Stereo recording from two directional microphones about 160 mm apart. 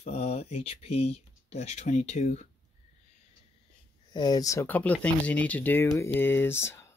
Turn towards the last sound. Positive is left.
turn(degrees=15)  # may be behind; listen again after turning